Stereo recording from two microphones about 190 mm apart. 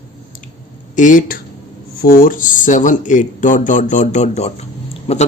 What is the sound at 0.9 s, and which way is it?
A man's voice, 45° left (ahead or behind).